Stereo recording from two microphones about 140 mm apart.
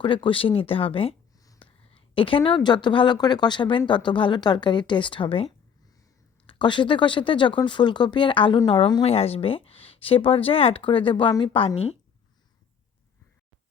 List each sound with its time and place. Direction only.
0.0 s speech: 35° left (ahead or behind)
1.9 s a sound: 40° left (ahead or behind)
2.6 s speech: 35° left (ahead or behind)